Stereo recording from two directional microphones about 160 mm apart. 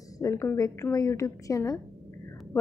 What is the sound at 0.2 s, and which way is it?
A woman's voice, 20° left (ahead or behind).